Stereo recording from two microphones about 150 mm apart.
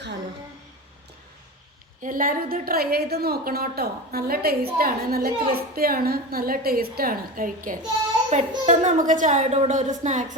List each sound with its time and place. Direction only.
2.0 s a woman's voice: 65° right (ahead or behind)
8.3 s a woman's voice: 55° right (ahead or behind)